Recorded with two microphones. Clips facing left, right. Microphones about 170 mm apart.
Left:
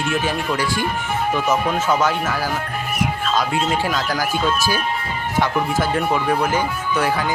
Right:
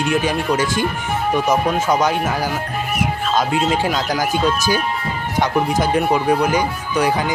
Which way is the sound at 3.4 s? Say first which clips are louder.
Right 4 dB; 20° right (ahead or behind).